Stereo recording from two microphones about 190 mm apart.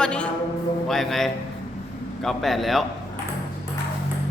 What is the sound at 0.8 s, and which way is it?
Music, centre (ahead or behind).